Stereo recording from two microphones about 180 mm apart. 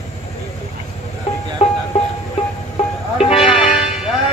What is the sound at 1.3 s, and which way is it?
Music, 35° left (ahead or behind).